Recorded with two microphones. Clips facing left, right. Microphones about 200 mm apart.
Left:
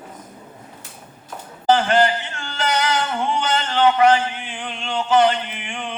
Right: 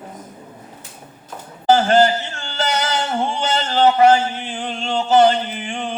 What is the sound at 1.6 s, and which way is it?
Yodeling, 40° right (ahead or behind).